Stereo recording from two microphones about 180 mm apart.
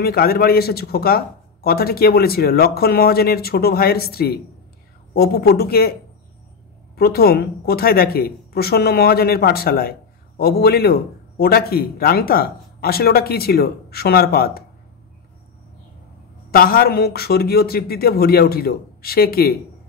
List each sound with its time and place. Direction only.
0.0 s speech: 55° left (ahead or behind)
7.0 s speech: 60° left (ahead or behind)
16.5 s speech: 55° left (ahead or behind)